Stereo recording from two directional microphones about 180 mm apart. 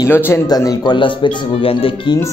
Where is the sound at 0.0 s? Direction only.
15° left (ahead or behind); by 2.1 s 30° left (ahead or behind).